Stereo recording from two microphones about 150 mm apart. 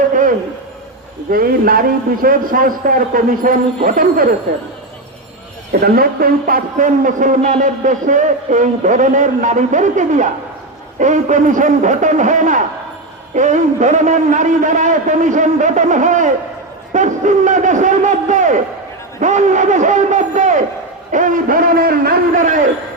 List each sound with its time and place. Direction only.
0.1 s a sound: 65° right (ahead or behind)
1.3 s a man's voice: 75° right (ahead or behind)
5.8 s a man's voice: 80° right; by 22.6 s 60° right (ahead or behind)